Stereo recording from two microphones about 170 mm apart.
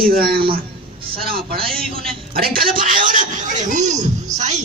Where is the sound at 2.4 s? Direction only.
55° right (ahead or behind).